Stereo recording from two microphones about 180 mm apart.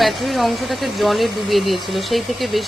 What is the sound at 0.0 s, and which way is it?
Speech, centre (ahead or behind).